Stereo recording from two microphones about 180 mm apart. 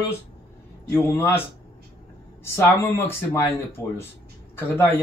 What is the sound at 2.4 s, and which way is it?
Speech, 15° left (ahead or behind).